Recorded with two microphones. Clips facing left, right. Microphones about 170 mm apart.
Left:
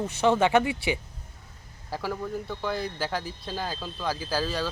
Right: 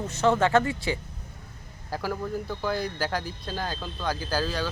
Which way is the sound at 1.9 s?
Centre (ahead or behind).